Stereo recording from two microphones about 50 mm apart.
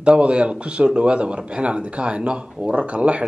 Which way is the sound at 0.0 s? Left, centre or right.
Right.